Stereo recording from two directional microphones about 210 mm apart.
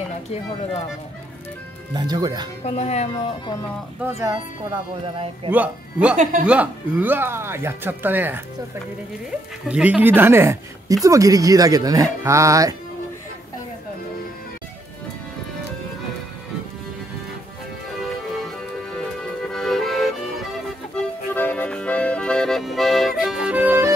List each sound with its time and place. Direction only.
2.0 s speech: 20° right (ahead or behind)
2.6 s speech: 30° left (ahead or behind)
4.2 s speech: 20° right (ahead or behind)
5.5 s a woman's voice: 5° right (ahead or behind)
9.7 s a woman's voice: 5° right (ahead or behind)
19.5 s accordion: centre (ahead or behind)
20.9 s music: 10° left (ahead or behind); by 23.9 s 10° right (ahead or behind)